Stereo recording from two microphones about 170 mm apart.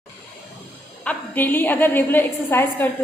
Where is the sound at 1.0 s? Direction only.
10° left (ahead or behind).